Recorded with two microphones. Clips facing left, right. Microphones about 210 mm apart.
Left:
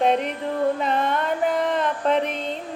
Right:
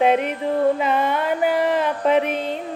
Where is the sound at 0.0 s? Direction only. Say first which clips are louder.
Right 3 dB; 5° right (ahead or behind).